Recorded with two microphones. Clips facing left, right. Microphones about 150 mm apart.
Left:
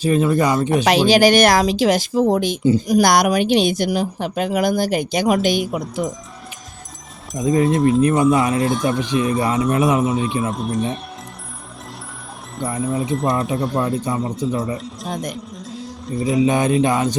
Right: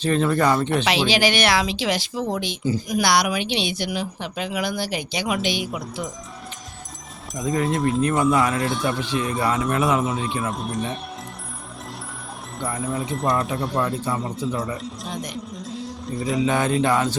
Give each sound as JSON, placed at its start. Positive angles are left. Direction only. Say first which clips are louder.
{"t": 0.0, "sound": "speech", "louder": "left 3 dB", "side_deg": 10}
{"t": 0.9, "sound": "a woman's voice", "louder": "left 10 dB", "side_deg": 45}
{"t": 7.3, "sound": "speech", "louder": "left 6 dB", "side_deg": 25}
{"t": 7.8, "sound": "speech", "louder": "left 6 dB", "side_deg": 0}
{"t": 8.0, "sound": "speech", "louder": "left 4 dB", "side_deg": 20}
{"t": 10.5, "sound": "speech", "louder": "left 5 dB", "side_deg": 0}
{"t": 12.8, "sound": "speech", "louder": "left 5 dB", "side_deg": 0}
{"t": 13.8, "sound": "speech", "louder": "left 4 dB", "side_deg": 20}
{"t": 15.0, "sound": "a woman's voice", "louder": "left 5 dB", "side_deg": 50}
{"t": 15.6, "sound": "music", "louder": "even", "side_deg": 0}
{"t": 16.2, "sound": "speech", "louder": "left 5 dB", "side_deg": 20}